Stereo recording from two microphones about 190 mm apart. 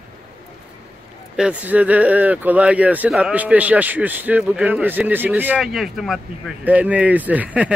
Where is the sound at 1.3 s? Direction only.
5° right (ahead or behind).